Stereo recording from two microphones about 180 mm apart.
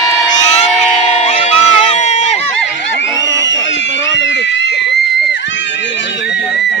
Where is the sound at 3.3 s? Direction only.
90° left.